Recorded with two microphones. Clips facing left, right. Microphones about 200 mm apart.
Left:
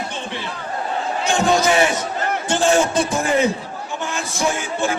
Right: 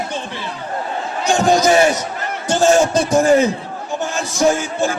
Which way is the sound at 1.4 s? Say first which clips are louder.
Right 4 dB; 40° right (ahead or behind).